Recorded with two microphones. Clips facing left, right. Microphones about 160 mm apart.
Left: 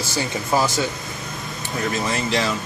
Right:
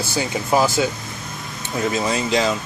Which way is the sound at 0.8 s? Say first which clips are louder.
Right 3 dB; 15° right (ahead or behind).